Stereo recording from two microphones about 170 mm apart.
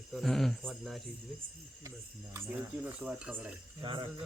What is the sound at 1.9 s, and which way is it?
Speech, 15° right (ahead or behind).